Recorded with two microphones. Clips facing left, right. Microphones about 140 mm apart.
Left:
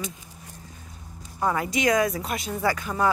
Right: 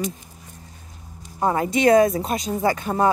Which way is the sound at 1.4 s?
30° right (ahead or behind).